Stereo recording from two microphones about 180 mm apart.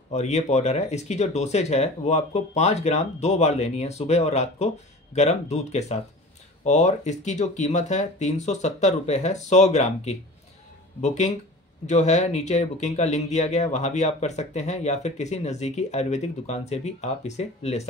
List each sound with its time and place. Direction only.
0.1 s speech: 40° left (ahead or behind)